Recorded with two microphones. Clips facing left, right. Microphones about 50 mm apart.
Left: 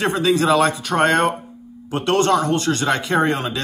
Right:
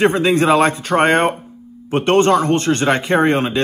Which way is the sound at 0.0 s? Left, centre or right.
Right.